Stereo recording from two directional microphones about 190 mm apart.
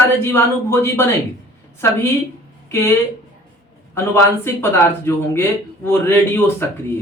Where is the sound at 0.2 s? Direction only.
15° left (ahead or behind).